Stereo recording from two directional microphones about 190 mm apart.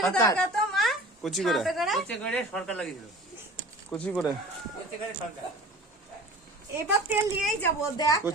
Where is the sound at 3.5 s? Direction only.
5° left (ahead or behind).